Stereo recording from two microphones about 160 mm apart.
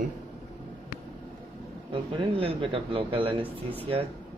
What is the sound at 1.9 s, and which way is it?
A man's voice, 35° right (ahead or behind).